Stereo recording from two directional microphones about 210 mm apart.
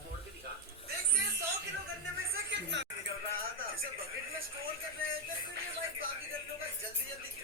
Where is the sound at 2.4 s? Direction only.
55° right (ahead or behind).